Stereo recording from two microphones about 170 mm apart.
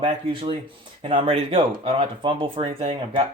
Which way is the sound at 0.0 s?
30° right (ahead or behind).